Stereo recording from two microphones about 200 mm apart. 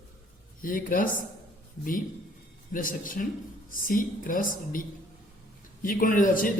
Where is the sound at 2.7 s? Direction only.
45° left (ahead or behind).